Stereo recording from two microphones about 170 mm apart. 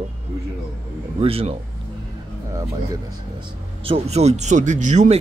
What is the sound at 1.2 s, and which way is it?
Speech, 35° right (ahead or behind).